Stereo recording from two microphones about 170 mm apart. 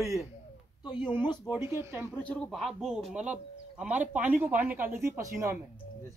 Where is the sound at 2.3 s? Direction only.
5° left (ahead or behind); by 5.6 s 15° right (ahead or behind).